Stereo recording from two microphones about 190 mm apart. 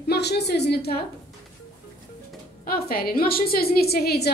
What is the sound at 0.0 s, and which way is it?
A woman's voice, 60° left (ahead or behind).